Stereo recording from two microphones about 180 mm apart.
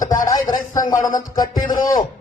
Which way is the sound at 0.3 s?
20° left (ahead or behind).